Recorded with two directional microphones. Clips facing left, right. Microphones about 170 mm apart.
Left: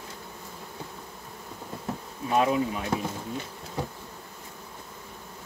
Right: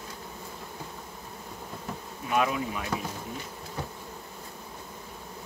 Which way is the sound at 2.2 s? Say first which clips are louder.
Left 3 dB; 30° left (ahead or behind).